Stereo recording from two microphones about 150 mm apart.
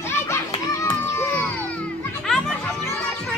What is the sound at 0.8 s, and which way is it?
Crowd, 15° left (ahead or behind).